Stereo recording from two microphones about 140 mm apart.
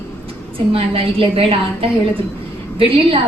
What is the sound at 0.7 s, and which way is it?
Speech, 40° right (ahead or behind).